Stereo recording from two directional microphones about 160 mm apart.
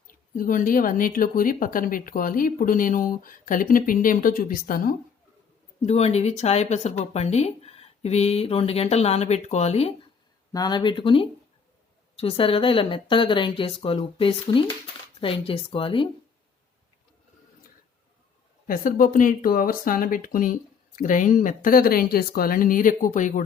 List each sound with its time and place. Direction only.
0.1 s a woman's voice: 60° left (ahead or behind)
5.8 s speech: 40° left (ahead or behind)
10.5 s speech: 25° left (ahead or behind)
18.7 s a woman's voice: 60° left (ahead or behind)